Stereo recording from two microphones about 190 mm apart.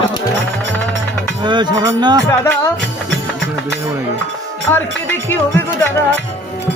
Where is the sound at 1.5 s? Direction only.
25° right (ahead or behind).